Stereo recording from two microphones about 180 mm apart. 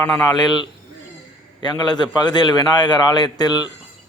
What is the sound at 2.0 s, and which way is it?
A man's voice, 25° left (ahead or behind).